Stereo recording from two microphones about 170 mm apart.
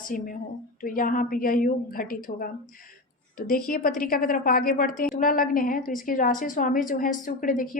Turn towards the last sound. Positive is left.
turn(degrees=50)  # may be behind; listen again after turning